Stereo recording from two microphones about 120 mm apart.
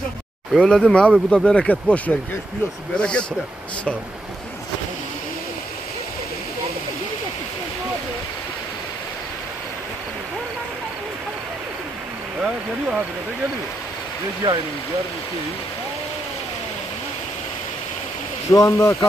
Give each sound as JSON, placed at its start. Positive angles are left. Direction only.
{"t": 0.6, "sound": "speech", "side_deg": 0}
{"t": 12.4, "sound": "speech", "side_deg": -5}
{"t": 14.4, "sound": "speech", "side_deg": -35}
{"t": 18.5, "sound": "speech", "side_deg": 25}